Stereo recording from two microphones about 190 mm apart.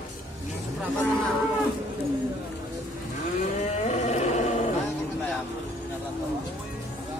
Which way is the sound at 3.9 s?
35° left (ahead or behind).